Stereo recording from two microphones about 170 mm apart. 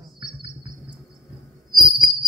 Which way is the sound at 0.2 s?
30° right (ahead or behind).